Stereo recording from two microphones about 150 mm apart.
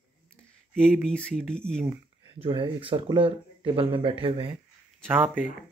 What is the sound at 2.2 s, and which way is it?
Speech, 40° right (ahead or behind).